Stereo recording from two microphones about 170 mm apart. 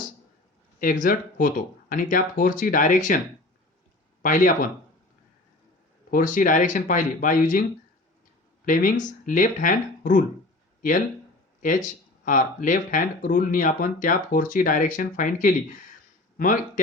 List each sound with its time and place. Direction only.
0.8 s speech: 55° left (ahead or behind)
4.2 s speech: 50° left (ahead or behind)
6.1 s speech: 50° left (ahead or behind)
8.6 s speech: 55° left (ahead or behind)
11.6 s speech: 50° left (ahead or behind)